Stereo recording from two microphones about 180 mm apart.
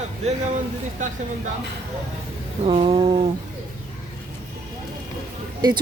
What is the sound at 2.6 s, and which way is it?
Speech, 30° right (ahead or behind).